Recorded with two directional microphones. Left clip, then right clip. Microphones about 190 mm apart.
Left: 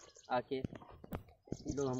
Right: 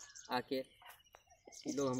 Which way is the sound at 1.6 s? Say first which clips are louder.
Right 1 dB; 30° left (ahead or behind).